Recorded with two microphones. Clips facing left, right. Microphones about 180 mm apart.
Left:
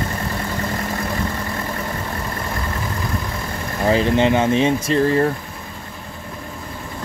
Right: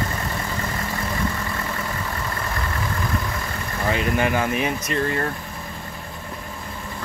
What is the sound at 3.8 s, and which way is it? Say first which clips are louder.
Speech: left 6 dB; 30° left (ahead or behind).